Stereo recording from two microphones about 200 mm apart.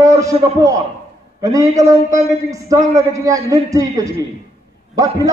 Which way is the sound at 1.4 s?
15° right (ahead or behind).